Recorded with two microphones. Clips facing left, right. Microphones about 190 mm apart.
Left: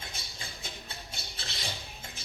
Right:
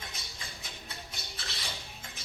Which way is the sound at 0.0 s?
25° left (ahead or behind).